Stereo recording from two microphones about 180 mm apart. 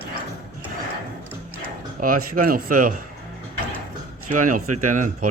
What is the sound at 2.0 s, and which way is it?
Speech, 50° right (ahead or behind).